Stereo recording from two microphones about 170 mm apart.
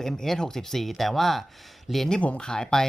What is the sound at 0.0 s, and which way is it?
Speech, centre (ahead or behind).